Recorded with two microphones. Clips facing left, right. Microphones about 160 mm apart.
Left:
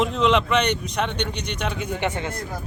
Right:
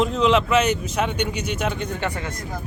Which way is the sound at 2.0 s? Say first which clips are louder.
Left 2 dB; 20° left (ahead or behind).